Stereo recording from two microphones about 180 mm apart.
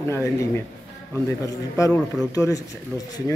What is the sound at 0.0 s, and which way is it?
Speech, 15° left (ahead or behind).